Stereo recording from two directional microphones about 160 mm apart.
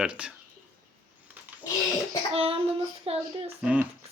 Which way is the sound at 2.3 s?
35° right (ahead or behind).